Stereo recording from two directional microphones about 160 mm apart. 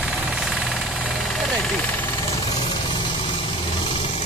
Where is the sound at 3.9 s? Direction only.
35° left (ahead or behind).